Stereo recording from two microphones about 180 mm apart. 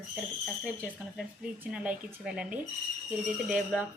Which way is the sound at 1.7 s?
5° right (ahead or behind).